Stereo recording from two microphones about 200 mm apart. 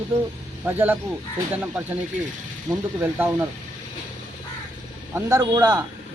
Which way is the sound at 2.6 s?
10° right (ahead or behind).